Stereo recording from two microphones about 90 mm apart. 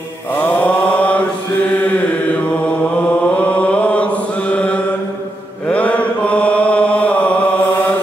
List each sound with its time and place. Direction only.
0.3 s mantra: 15° left (ahead or behind)
3.3 s chant: 15° left (ahead or behind)